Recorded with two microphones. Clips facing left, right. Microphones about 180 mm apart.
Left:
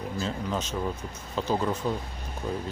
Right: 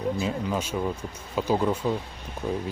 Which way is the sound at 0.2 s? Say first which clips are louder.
Right 3 dB; 10° right (ahead or behind).